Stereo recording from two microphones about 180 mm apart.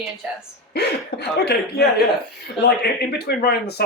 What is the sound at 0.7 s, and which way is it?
Speech, 65° left (ahead or behind).